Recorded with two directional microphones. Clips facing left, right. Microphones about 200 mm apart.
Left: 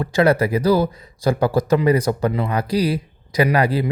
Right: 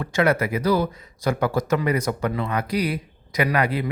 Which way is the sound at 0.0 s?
35° left (ahead or behind).